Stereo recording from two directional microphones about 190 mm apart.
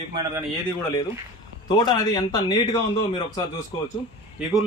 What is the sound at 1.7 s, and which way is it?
A man's voice, 20° left (ahead or behind).